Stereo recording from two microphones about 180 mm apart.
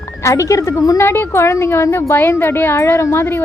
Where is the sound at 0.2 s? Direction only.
15° left (ahead or behind).